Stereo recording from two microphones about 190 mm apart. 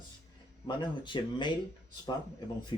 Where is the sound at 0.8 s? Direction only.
25° left (ahead or behind).